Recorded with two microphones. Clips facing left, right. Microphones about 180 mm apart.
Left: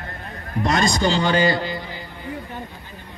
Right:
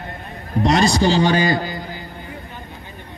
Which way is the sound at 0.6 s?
35° right (ahead or behind).